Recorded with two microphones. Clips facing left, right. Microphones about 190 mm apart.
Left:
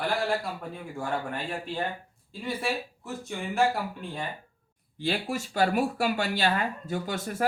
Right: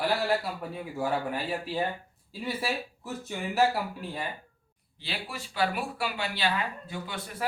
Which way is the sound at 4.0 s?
5° right (ahead or behind).